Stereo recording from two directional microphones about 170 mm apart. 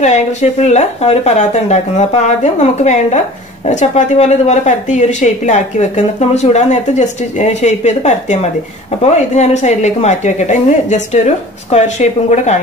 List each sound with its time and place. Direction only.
0.0 s a woman's voice: 45° left (ahead or behind)